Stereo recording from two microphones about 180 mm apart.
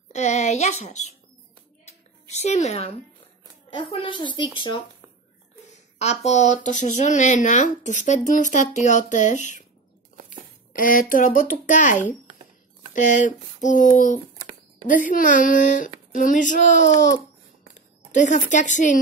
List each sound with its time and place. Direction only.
0.1 s a child's voice: 40° left (ahead or behind)
1.9 s a sound: 40° left (ahead or behind)
3.7 s a child's voice: 30° left (ahead or behind)
5.9 s speech: 40° left (ahead or behind)
10.7 s speech: 50° left (ahead or behind)
18.1 s speech: 45° left (ahead or behind)